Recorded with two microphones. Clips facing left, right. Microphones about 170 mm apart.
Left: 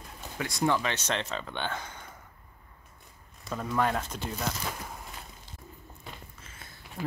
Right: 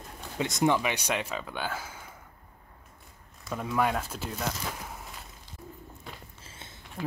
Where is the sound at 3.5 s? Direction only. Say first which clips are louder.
Right 1 dB; centre (ahead or behind).